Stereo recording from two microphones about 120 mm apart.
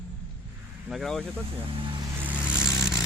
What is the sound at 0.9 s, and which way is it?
Speech, centre (ahead or behind).